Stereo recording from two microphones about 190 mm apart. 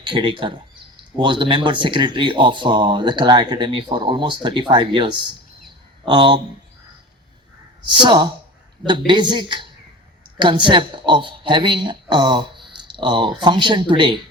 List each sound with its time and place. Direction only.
0.0 s speech: 25° right (ahead or behind)
7.9 s speech: 25° right (ahead or behind)